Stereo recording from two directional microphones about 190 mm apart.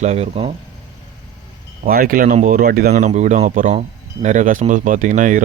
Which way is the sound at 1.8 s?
50° right (ahead or behind).